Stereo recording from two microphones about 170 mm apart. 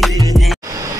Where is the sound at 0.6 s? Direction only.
20° right (ahead or behind).